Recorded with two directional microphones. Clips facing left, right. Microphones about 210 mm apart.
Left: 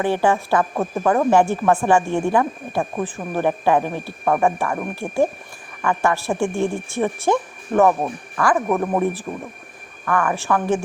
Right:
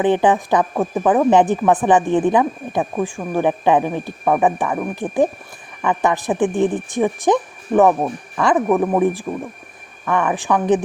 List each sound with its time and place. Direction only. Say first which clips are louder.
0.0 s speech: right 3 dB; 20° right (ahead or behind)
8.7 s speech: right 4 dB; 10° right (ahead or behind)